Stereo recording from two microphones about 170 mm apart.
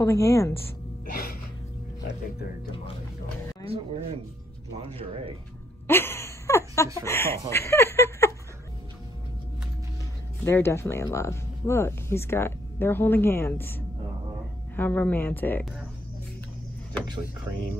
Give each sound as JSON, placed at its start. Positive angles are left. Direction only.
{"t": 0.0, "sound": "speech", "side_deg": 15}
{"t": 1.1, "sound": "music", "side_deg": 60}
{"t": 3.6, "sound": "speech", "side_deg": -35}
{"t": 5.9, "sound": "a sound", "side_deg": 15}
{"t": 7.1, "sound": "speech", "side_deg": 15}
{"t": 10.4, "sound": "speech", "side_deg": 15}
{"t": 17.5, "sound": "speech", "side_deg": -15}